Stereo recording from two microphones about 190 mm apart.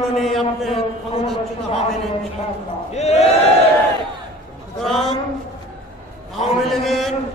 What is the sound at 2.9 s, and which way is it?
Speech, 35° left (ahead or behind).